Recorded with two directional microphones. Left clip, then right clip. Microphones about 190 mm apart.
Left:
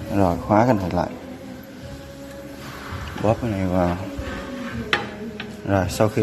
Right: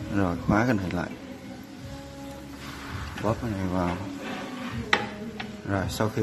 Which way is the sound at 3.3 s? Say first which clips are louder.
Left 7 dB; 10° left (ahead or behind).